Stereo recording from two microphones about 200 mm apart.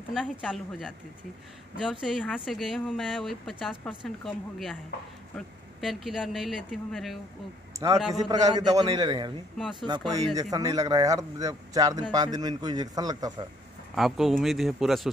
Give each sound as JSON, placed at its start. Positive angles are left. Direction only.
{"t": 0.1, "sound": "speech", "side_deg": 0}
{"t": 5.8, "sound": "speech", "side_deg": 0}
{"t": 8.3, "sound": "speech", "side_deg": -20}
{"t": 9.6, "sound": "speech", "side_deg": 0}
{"t": 9.8, "sound": "speech", "side_deg": -20}
{"t": 13.9, "sound": "speech", "side_deg": 0}